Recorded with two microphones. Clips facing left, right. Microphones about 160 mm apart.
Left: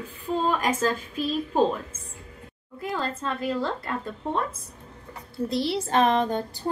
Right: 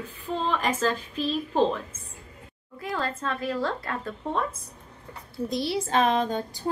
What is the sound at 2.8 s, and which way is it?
Speech, 15° left (ahead or behind).